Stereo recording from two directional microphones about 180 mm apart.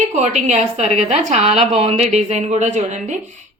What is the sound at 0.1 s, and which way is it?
A woman's voice, 40° right (ahead or behind).